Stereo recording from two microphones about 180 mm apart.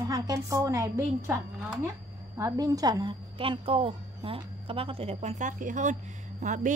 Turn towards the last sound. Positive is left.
turn(degrees=-40)  # may be behind; listen again after turning